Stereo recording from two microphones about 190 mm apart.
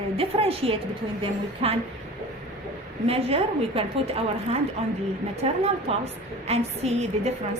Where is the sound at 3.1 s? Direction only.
30° right (ahead or behind).